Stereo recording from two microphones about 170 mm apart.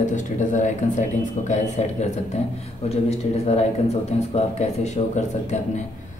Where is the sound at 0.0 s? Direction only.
45° left (ahead or behind).